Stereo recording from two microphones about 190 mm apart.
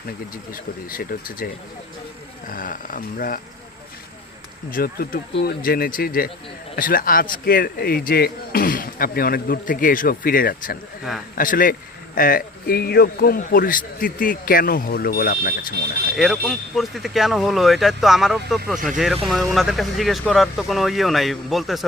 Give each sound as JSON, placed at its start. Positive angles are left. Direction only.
{"t": 0.5, "sound": "speech", "side_deg": 50}
{"t": 2.5, "sound": "speech", "side_deg": 45}
{"t": 4.7, "sound": "speech", "side_deg": 50}
{"t": 16.1, "sound": "speech", "side_deg": 0}